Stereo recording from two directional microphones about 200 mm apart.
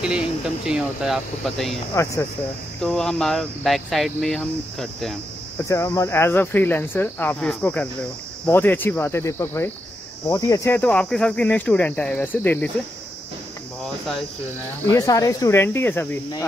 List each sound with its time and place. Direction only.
0.7 s speech: 5° right (ahead or behind)
2.8 s speech: 5° left (ahead or behind)
5.6 s speech: 15° left (ahead or behind)
14.9 s speech: 15° left (ahead or behind)